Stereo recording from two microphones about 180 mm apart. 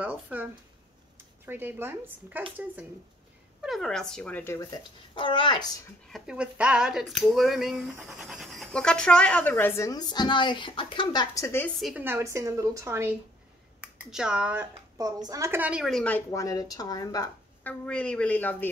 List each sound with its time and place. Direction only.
0.0 s a woman's voice: 10° right (ahead or behind)
3.6 s speech: centre (ahead or behind)
5.1 s a child's voice: 25° left (ahead or behind)
6.1 s speech: 5° right (ahead or behind); by 11.7 s 15° left (ahead or behind)
11.8 s a woman's voice: 10° right (ahead or behind)
15.0 s a woman's voice: 20° right (ahead or behind); by 17.3 s 20° left (ahead or behind)
17.6 s a woman's voice: 5° left (ahead or behind)